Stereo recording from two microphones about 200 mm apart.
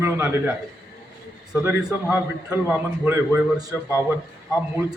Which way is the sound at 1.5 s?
5° right (ahead or behind).